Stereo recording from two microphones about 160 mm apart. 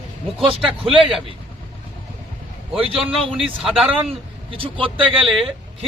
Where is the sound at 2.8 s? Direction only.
35° right (ahead or behind).